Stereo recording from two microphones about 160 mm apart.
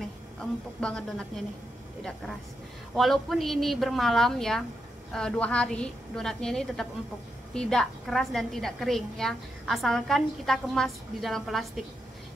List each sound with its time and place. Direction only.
0.4 s a woman's voice: 5° left (ahead or behind)
2.9 s a woman's voice: centre (ahead or behind)